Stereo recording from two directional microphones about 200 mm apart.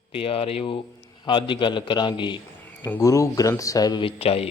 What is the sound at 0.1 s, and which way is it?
Speech, 30° left (ahead or behind).